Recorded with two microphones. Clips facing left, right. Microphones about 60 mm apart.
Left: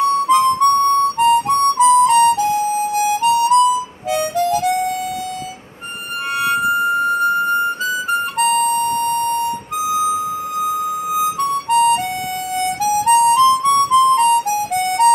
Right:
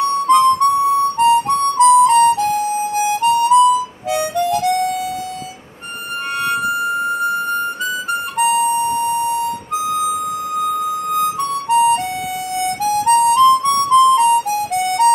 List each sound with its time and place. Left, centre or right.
0.0 s harmonica: centre
6.4 s music: centre
8.4 s music: centre
8.8 s beep: left
9.8 s music: centre
12.8 s harmonica: centre